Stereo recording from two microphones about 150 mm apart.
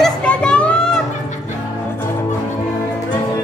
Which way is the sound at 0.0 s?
5° left (ahead or behind).